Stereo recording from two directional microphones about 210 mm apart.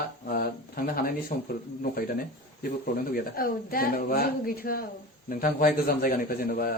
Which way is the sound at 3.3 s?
45° left (ahead or behind).